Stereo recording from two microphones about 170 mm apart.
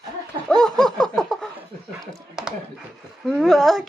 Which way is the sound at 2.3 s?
5° right (ahead or behind).